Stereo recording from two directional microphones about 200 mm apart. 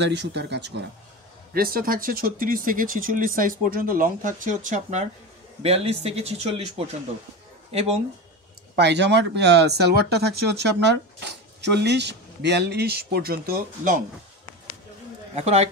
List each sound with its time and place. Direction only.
0.0 s a man's voice: 60° right (ahead or behind); by 8.0 s 30° right (ahead or behind)
8.7 s speech: 60° right (ahead or behind)
15.3 s a man's voice: 35° right (ahead or behind)